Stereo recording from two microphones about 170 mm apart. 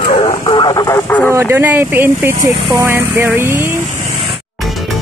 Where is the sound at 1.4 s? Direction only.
15° right (ahead or behind).